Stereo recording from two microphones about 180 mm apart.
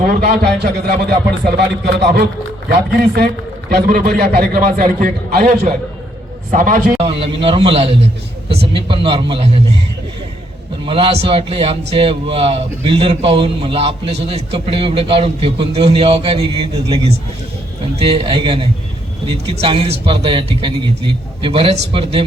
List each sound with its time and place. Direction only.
0.0 s a man's voice: 60° right (ahead or behind)
6.5 s a man's voice: 50° right (ahead or behind)
7.0 s a man's voice: 30° right (ahead or behind)
10.8 s speech: 30° right (ahead or behind)
18.0 s speech: 25° right (ahead or behind)